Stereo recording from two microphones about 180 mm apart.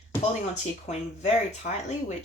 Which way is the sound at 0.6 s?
40° left (ahead or behind).